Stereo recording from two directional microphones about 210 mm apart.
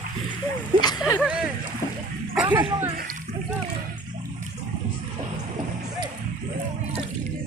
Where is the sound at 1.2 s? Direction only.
5° right (ahead or behind).